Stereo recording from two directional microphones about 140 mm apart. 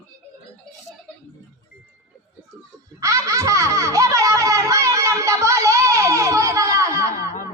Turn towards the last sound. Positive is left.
turn(degrees=-25)  # may be behind; listen again after turning